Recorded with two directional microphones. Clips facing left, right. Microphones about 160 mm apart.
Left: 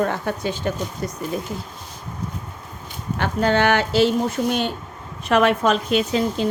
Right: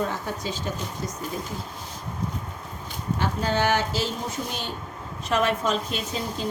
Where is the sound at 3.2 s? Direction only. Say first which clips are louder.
Left 6 dB; 65° left (ahead or behind).